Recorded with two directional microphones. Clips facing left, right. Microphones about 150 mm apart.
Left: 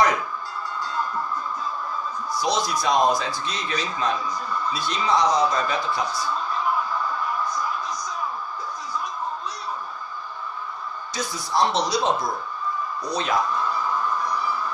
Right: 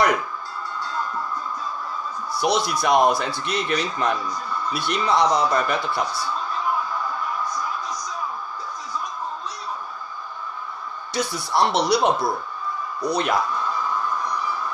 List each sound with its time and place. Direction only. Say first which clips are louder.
2.3 s speech: right 2 dB; 65° right (ahead or behind)
11.1 s speech: right 2 dB; 65° right (ahead or behind)